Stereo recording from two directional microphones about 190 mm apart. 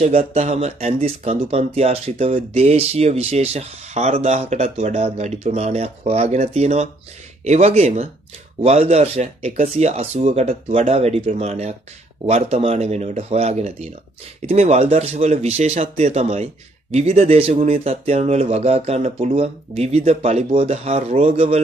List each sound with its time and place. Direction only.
0.0 s speech: 30° right (ahead or behind)